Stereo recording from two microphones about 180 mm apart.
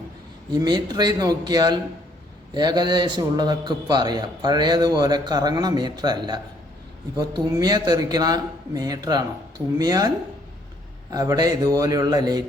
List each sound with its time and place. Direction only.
0.5 s a man's voice: 20° right (ahead or behind)
11.1 s a man's voice: 20° right (ahead or behind)